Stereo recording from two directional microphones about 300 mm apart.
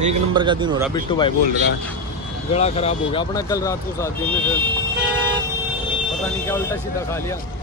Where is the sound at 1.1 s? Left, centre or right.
Centre.